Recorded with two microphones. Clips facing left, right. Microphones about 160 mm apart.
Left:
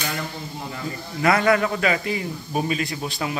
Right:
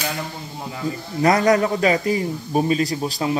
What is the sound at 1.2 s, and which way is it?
A man's voice, 40° right (ahead or behind).